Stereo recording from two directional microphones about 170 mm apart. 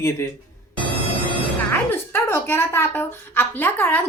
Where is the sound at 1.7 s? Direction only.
15° left (ahead or behind).